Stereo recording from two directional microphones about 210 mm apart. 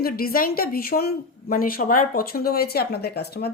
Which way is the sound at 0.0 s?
45° left (ahead or behind).